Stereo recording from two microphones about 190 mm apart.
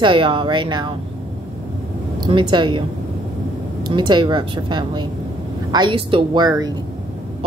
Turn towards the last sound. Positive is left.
turn(degrees=-20)  # may be behind; listen again after turning